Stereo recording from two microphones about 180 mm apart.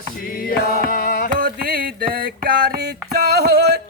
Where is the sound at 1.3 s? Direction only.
50° right (ahead or behind).